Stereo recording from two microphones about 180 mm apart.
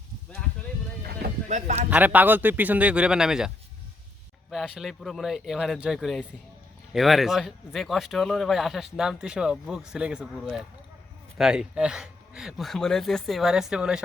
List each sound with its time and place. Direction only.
1.5 s speech: 40° right (ahead or behind)
1.9 s a man's voice: 10° right (ahead or behind)
4.5 s speech: 5° right (ahead or behind)